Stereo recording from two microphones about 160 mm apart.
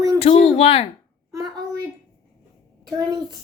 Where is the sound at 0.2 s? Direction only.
40° left (ahead or behind).